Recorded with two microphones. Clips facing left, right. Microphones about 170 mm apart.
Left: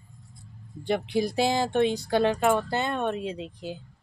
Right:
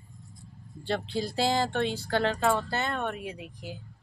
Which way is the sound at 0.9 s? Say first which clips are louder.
Left 5 dB; 15° left (ahead or behind).